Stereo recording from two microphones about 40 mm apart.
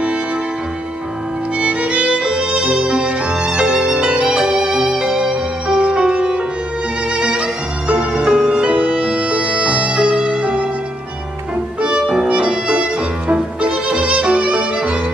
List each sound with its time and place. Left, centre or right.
1.6 s violin: right
5.3 s music: right
12.1 s music: right
13.3 s violin: right